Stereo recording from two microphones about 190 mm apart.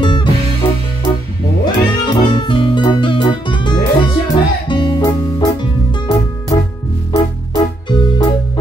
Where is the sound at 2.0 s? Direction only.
25° left (ahead or behind).